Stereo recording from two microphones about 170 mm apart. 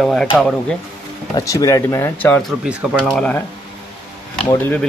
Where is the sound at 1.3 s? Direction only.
20° left (ahead or behind).